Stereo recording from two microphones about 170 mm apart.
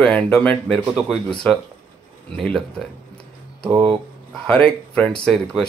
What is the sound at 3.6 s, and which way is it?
Speech, 25° right (ahead or behind).